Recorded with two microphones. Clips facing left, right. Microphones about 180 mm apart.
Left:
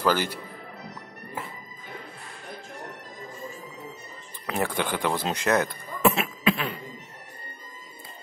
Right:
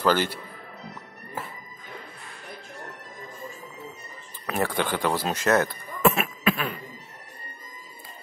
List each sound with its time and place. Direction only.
0.0 s speech: 10° left (ahead or behind)
4.5 s speech: 15° left (ahead or behind)
6.1 s cough: 25° left (ahead or behind)